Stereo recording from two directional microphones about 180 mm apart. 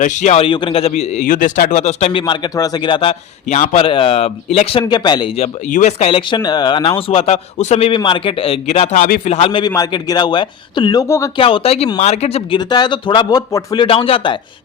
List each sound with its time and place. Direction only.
0.0 s a man's voice: 40° left (ahead or behind); by 5.3 s 25° left (ahead or behind)
5.4 s a man's voice: 40° left (ahead or behind)
6.1 s a man's voice: 25° left (ahead or behind)
11.3 s a man's voice: 30° left (ahead or behind)
13.8 s a man's voice: 30° left (ahead or behind)